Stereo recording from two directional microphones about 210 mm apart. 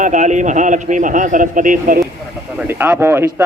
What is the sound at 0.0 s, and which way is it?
A man's voice, 35° right (ahead or behind).